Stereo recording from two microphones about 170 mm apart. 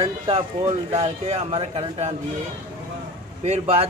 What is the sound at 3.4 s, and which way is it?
Speech, 40° right (ahead or behind).